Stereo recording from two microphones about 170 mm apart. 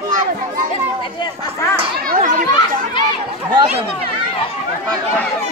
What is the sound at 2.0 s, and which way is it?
Speech, 55° right (ahead or behind).